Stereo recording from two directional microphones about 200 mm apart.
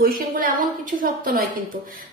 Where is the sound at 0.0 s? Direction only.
45° right (ahead or behind).